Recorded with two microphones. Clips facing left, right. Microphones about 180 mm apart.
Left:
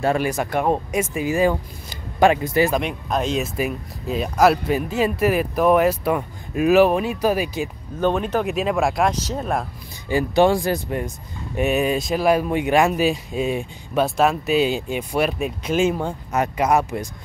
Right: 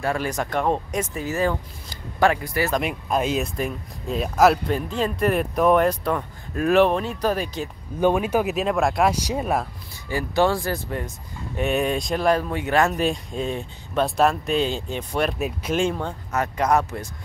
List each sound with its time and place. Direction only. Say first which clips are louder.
0.2 s speech: left 3 dB; 10° left (ahead or behind)
2.8 s speech: even; 5° right (ahead or behind)
3.4 s speech: left 3 dB; 5° left (ahead or behind)
8.0 s speech: right 1 dB; 10° right (ahead or behind)
9.1 s speech: even; 10° right (ahead or behind)
10.0 s speech: left 4 dB; 20° left (ahead or behind)
11.5 s speech: left 3 dB; 5° left (ahead or behind)